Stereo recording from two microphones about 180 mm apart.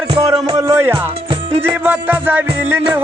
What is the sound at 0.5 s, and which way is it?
Music, 15° right (ahead or behind).